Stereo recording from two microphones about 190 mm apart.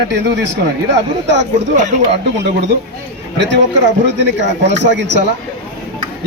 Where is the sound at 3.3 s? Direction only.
65° right (ahead or behind).